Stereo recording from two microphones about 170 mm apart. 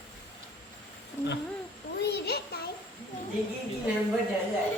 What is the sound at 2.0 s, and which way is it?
Child singing, 70° left (ahead or behind).